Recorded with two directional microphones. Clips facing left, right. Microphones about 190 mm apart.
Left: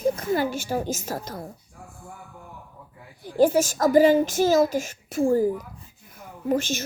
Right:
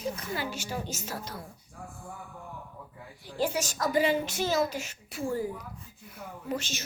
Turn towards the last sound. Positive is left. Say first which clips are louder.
# left 10 dB
turn(degrees=50)  # may be behind; listen again after turning